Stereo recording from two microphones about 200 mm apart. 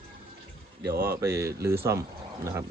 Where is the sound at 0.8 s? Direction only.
50° right (ahead or behind).